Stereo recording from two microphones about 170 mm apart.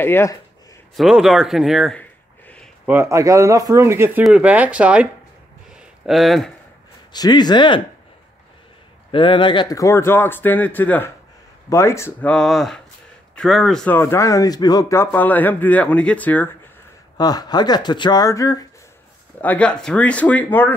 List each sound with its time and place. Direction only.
0.0 s speech: 15° left (ahead or behind)
0.9 s speech: centre (ahead or behind)
2.9 s speech: 15° right (ahead or behind)
5.8 s a sound: centre (ahead or behind)
7.1 s speech: 25° left (ahead or behind)
9.1 s speech: 30° left (ahead or behind); by 16.4 s 10° left (ahead or behind)
17.2 s speech: 25° left (ahead or behind)
19.4 s speech: 10° left (ahead or behind)